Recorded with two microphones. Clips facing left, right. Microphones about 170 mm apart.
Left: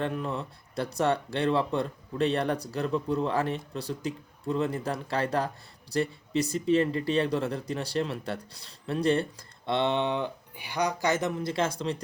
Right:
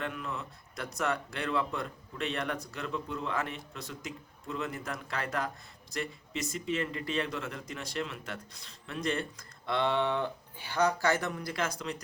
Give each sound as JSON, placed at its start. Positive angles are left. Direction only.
{"t": 0.0, "sound": "speech", "side_deg": 35}